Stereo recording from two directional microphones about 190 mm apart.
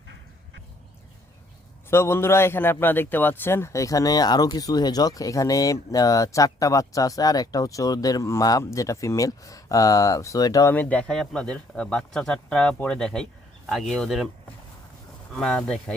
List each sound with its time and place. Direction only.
1.9 s a man's voice: 10° left (ahead or behind)
15.3 s speech: centre (ahead or behind)